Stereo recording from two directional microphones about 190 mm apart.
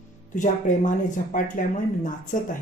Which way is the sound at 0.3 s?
40° left (ahead or behind).